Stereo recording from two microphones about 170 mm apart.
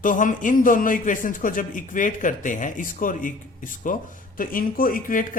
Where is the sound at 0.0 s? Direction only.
50° left (ahead or behind).